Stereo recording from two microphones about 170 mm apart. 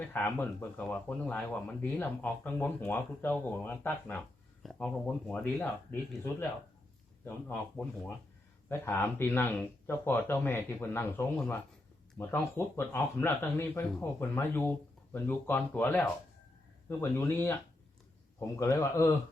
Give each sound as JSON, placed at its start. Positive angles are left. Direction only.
{"t": 0.1, "sound": "speech", "side_deg": 10}
{"t": 7.3, "sound": "speech", "side_deg": 10}